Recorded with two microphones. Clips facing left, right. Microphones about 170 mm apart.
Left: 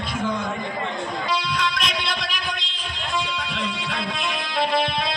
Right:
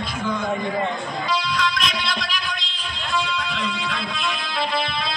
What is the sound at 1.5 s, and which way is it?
Music, 65° left (ahead or behind).